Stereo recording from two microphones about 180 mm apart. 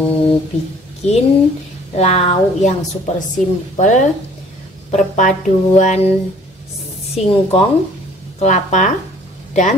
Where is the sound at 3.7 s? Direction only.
45° left (ahead or behind).